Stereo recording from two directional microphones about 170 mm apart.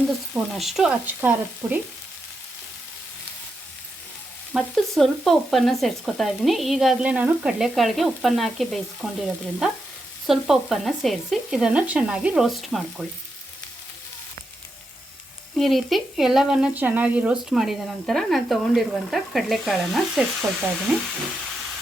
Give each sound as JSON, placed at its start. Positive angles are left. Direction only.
{"t": 0.5, "sound": "frying", "side_deg": 0}
{"t": 4.5, "sound": "frying", "side_deg": 0}
{"t": 15.5, "sound": "frying", "side_deg": 0}